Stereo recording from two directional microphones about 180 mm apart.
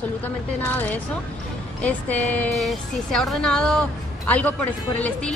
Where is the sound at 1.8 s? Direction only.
10° left (ahead or behind).